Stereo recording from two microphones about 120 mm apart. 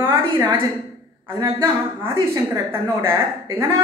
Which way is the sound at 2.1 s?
25° right (ahead or behind).